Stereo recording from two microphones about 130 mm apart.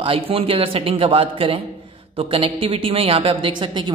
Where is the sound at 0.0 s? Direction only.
45° right (ahead or behind).